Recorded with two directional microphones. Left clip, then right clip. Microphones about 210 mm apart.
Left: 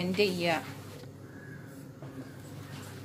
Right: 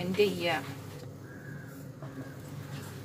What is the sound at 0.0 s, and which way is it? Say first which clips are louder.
Speech: even; 45° left (ahead or behind).